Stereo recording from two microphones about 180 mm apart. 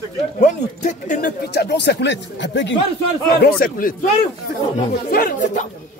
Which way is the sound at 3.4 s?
50° left (ahead or behind).